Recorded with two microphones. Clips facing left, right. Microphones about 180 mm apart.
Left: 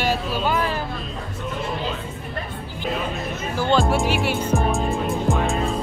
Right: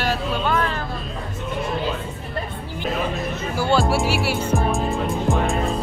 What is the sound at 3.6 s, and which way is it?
Music, 10° right (ahead or behind).